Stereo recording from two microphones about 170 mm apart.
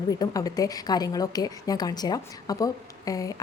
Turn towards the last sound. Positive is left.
turn(degrees=20)  # may be behind; listen again after turning